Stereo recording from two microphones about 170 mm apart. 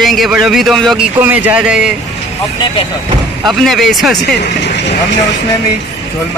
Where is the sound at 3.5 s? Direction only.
Centre (ahead or behind).